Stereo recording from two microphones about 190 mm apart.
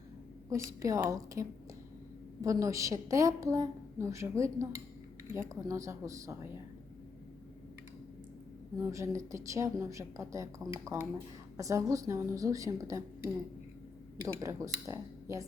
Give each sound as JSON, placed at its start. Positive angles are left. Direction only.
{"t": 0.5, "sound": "a woman's voice", "side_deg": -15}
{"t": 8.8, "sound": "a woman's voice", "side_deg": -15}
{"t": 14.4, "sound": "a woman's voice", "side_deg": -15}